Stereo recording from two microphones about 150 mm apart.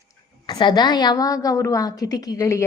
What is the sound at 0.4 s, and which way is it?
A woman's voice, 30° left (ahead or behind).